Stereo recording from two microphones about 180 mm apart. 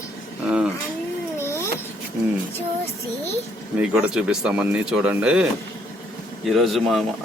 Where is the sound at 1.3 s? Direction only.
15° left (ahead or behind).